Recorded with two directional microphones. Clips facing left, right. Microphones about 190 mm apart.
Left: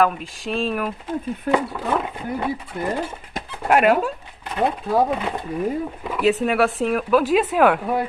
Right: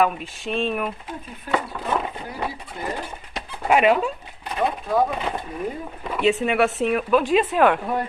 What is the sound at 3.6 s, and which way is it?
Speech, centre (ahead or behind).